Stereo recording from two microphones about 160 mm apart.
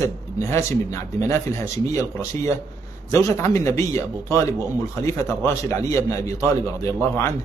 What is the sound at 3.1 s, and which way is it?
Speech, 20° left (ahead or behind).